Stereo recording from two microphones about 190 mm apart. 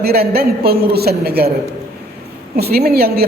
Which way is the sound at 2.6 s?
55° right (ahead or behind).